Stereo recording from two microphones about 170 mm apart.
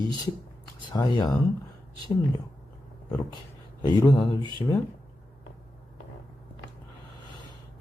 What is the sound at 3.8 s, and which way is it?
Speech, 20° left (ahead or behind).